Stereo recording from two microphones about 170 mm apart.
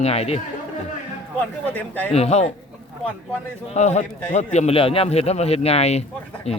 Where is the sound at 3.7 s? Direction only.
45° left (ahead or behind).